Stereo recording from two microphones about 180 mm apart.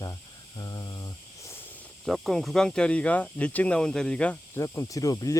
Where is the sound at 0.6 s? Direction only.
20° left (ahead or behind).